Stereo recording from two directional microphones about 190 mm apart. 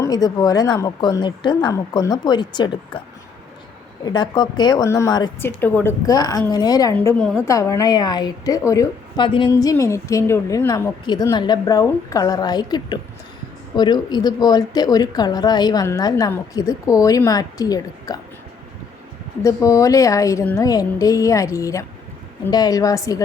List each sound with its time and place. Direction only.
0.0 s a woman's voice: 20° left (ahead or behind)
4.0 s a woman's voice: 20° left (ahead or behind)
19.4 s a woman's voice: 15° left (ahead or behind)